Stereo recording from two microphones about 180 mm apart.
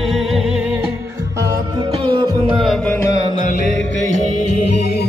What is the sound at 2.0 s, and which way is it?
Music, 25° right (ahead or behind).